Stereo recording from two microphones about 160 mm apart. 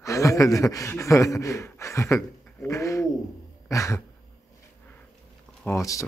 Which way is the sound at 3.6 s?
20° left (ahead or behind).